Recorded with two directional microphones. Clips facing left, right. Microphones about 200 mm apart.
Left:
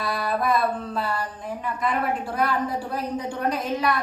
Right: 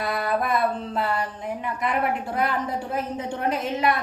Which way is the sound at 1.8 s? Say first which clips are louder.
Even; 20° right (ahead or behind).